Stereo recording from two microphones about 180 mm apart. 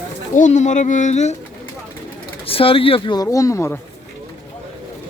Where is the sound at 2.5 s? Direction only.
30° left (ahead or behind); by 3.8 s 15° left (ahead or behind).